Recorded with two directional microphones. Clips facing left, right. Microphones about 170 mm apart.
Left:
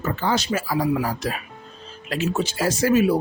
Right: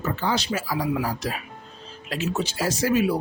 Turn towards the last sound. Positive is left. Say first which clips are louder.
# left 4 dB
turn(degrees=45)  # may be behind; listen again after turning